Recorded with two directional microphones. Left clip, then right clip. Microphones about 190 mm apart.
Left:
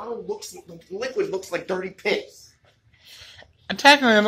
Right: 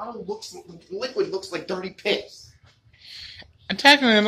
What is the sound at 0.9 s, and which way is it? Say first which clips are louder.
Speech: even; centre (ahead or behind).